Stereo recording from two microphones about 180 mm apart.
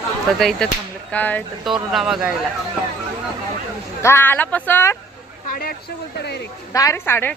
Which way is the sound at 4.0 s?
15° left (ahead or behind).